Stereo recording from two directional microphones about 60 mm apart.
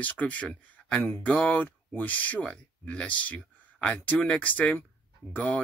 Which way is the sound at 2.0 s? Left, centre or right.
Left.